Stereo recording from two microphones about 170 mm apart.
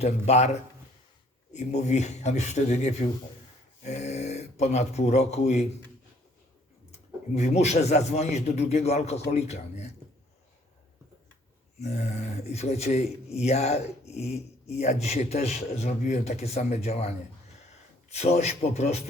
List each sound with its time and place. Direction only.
0.0 s speech: 40° left (ahead or behind)
6.9 s speech: 40° left (ahead or behind)
11.8 s speech: 40° left (ahead or behind)